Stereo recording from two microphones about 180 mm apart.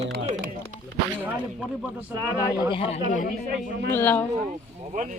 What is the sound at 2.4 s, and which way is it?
Speech, 20° left (ahead or behind).